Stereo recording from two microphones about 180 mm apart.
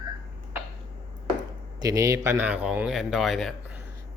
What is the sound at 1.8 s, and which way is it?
Speech, 20° right (ahead or behind).